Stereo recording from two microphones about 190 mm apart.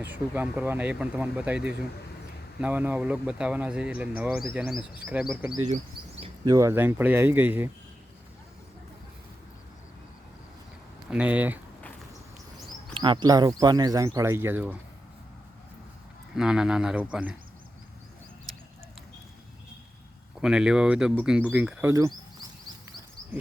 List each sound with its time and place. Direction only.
0.0 s speech: 10° right (ahead or behind)
5.6 s a sound: 35° right (ahead or behind)
6.4 s speech: 15° right (ahead or behind)
11.1 s speech: 5° right (ahead or behind)
12.9 s speech: 25° right (ahead or behind); by 14.8 s 10° right (ahead or behind)
16.3 s speech: 5° right (ahead or behind)
20.4 s speech: 5° right (ahead or behind)